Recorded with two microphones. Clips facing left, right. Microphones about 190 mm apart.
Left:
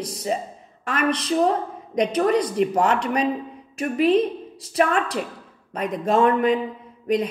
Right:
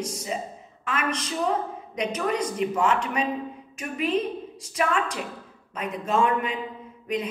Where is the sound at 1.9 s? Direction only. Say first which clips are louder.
Left 7 dB; 40° left (ahead or behind).